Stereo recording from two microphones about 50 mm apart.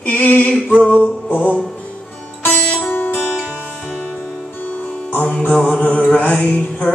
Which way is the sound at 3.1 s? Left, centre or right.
Centre.